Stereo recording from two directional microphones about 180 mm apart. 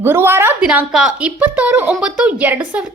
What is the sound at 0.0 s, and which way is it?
A woman's voice, 10° right (ahead or behind).